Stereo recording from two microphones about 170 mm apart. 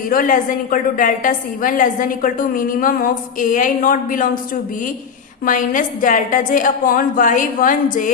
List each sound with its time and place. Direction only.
0.1 s a woman's voice: 55° left (ahead or behind)
5.5 s a woman's voice: 50° left (ahead or behind)